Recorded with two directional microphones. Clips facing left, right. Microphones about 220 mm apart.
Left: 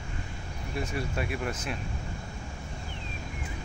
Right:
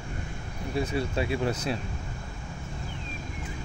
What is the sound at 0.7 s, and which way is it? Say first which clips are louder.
Speech: right 5 dB; 25° right (ahead or behind).